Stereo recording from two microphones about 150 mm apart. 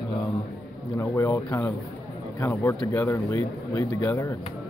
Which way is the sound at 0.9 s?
20° left (ahead or behind).